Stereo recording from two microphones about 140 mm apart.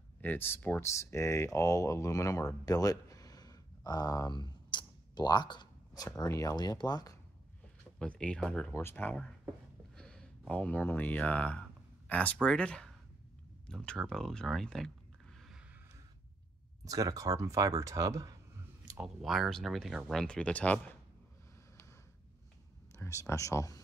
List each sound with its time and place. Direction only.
0.2 s speech: 15° left (ahead or behind); by 7.2 s 30° left (ahead or behind)
8.0 s speech: 5° left (ahead or behind)
16.8 s speech: 25° right (ahead or behind)
18.9 s speech: 5° right (ahead or behind)
23.2 s speech: 20° left (ahead or behind)